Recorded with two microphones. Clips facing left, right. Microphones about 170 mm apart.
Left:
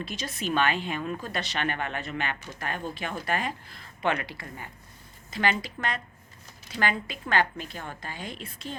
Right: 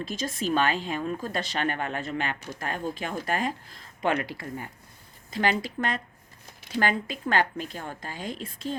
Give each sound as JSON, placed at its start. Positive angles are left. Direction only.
{"t": 0.1, "sound": "speech", "side_deg": -40}
{"t": 5.4, "sound": "speech", "side_deg": -40}